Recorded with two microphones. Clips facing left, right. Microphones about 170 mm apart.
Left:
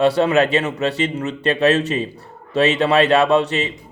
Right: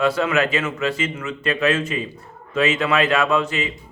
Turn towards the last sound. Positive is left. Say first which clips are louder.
# left 4 dB
turn(degrees=35)  # may be behind; listen again after turning